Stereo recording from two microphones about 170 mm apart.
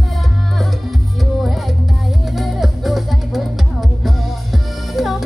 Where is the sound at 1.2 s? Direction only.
Centre (ahead or behind).